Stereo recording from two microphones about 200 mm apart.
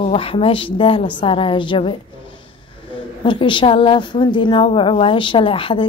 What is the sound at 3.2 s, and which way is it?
A woman's voice, 25° left (ahead or behind).